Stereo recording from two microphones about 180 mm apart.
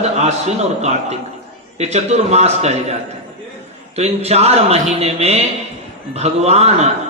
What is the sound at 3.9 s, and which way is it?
A man's voice, 35° right (ahead or behind).